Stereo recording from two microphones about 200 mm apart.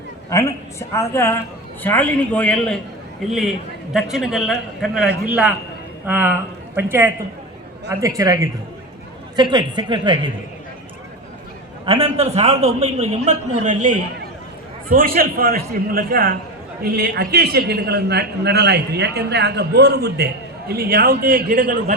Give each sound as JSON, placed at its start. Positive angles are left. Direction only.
{"t": 0.3, "sound": "a woman's voice", "side_deg": 15}
{"t": 11.9, "sound": "a man's voice", "side_deg": -30}